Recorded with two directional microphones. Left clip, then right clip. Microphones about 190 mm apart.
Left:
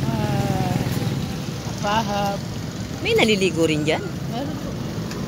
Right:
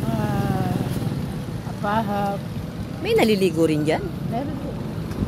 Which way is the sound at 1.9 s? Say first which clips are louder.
Left 1 dB; 55° right (ahead or behind).